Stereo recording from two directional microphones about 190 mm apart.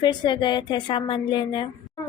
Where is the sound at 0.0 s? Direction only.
25° left (ahead or behind).